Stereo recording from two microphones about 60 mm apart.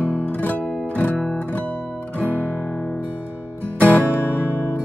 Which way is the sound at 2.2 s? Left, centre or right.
Left.